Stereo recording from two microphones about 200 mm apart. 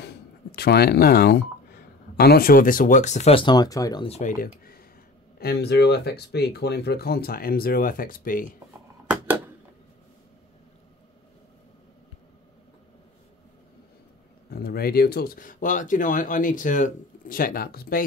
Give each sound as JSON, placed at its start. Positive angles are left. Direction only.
{"t": 0.0, "sound": "telephone dialing", "side_deg": 55}
{"t": 2.1, "sound": "speech", "side_deg": 50}
{"t": 4.1, "sound": "speech", "side_deg": 45}
{"t": 14.5, "sound": "speech", "side_deg": 50}